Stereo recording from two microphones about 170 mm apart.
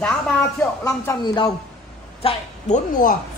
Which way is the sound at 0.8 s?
20° left (ahead or behind).